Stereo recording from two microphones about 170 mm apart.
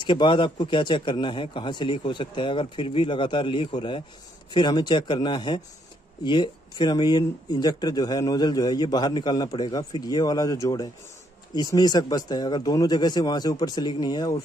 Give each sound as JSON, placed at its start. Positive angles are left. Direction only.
{"t": 0.0, "sound": "speech", "side_deg": 30}